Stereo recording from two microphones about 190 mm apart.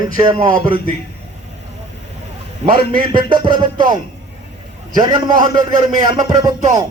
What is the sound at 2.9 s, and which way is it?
Speech, 25° right (ahead or behind).